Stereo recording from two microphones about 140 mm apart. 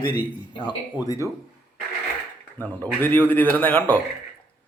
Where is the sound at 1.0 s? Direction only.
20° left (ahead or behind).